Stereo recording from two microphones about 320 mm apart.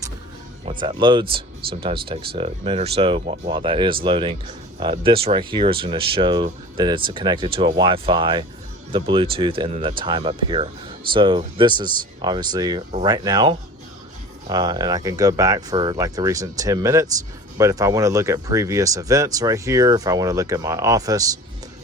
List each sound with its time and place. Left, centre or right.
0.6 s speech: centre